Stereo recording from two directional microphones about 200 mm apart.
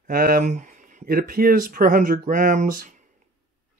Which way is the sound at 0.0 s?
45° right (ahead or behind).